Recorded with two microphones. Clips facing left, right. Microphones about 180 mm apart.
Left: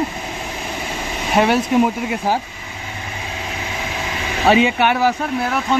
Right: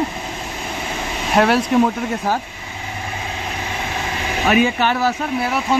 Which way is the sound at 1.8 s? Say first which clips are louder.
Even; 15° left (ahead or behind).